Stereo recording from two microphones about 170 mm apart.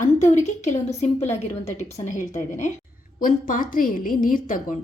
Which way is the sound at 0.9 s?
40° left (ahead or behind).